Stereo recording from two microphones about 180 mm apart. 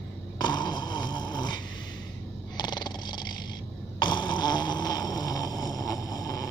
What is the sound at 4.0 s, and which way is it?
Snoring, 25° left (ahead or behind).